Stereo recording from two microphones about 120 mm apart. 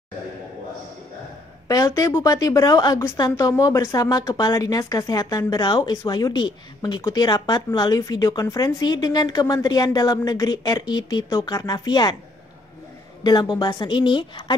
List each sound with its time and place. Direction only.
1.7 s speech: 25° left (ahead or behind)
13.2 s speech: 35° left (ahead or behind)